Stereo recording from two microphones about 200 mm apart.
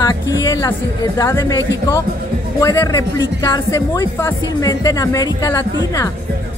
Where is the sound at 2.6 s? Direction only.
15° left (ahead or behind).